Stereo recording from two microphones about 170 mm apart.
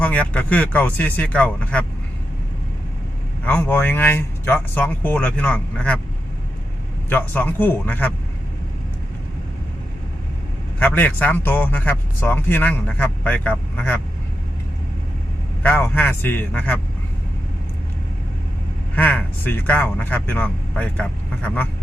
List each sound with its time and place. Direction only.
0.0 s speech: 10° left (ahead or behind)
3.4 s speech: 10° left (ahead or behind)
7.1 s speech: 10° left (ahead or behind)
10.8 s speech: 10° left (ahead or behind)
15.6 s speech: 10° left (ahead or behind)
18.9 s speech: 10° left (ahead or behind)